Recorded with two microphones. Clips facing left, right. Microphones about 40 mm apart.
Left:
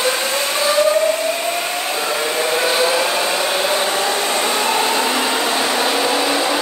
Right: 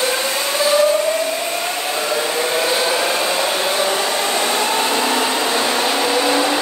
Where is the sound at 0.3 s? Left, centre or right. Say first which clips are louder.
Right 1 dB; left.